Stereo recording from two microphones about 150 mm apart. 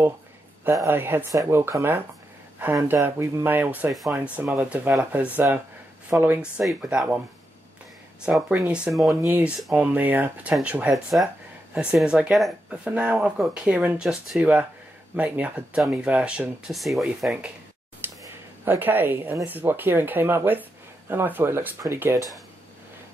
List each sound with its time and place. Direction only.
0.7 s speech: 15° right (ahead or behind)
3.9 s speech: centre (ahead or behind)
8.3 s speech: 10° right (ahead or behind)
9.1 s speech: 15° right (ahead or behind)
18.0 s a sound: 15° right (ahead or behind)
18.7 s speech: 15° right (ahead or behind)